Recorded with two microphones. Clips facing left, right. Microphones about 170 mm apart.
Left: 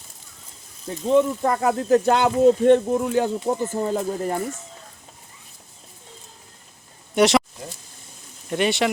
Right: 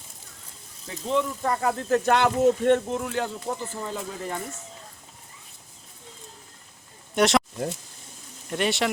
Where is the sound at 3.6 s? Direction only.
45° left (ahead or behind).